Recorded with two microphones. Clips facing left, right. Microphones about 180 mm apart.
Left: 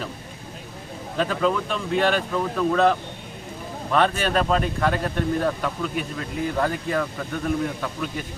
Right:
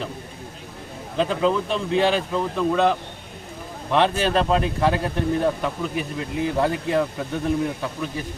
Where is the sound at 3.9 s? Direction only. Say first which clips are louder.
Right 1 dB; 20° right (ahead or behind).